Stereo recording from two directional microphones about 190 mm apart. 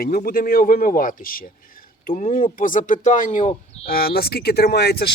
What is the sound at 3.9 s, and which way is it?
Speech, 50° left (ahead or behind).